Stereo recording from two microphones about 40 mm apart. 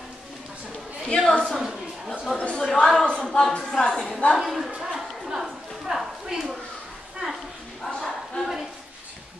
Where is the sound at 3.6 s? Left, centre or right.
Centre.